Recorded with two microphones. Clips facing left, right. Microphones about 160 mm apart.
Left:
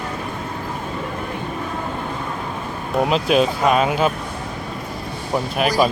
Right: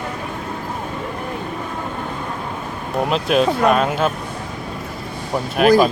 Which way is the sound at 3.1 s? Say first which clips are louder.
Right 1 dB; centre (ahead or behind).